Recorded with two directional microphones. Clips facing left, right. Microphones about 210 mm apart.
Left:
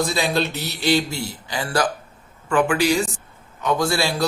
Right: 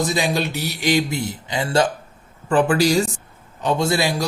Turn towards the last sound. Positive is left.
turn(degrees=-15)  # may be behind; listen again after turning